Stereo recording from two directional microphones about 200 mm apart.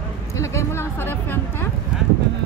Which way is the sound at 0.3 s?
15° left (ahead or behind).